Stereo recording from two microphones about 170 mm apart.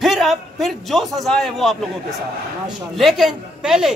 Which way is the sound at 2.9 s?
Centre (ahead or behind).